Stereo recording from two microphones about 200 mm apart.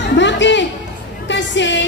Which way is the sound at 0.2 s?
65° left (ahead or behind).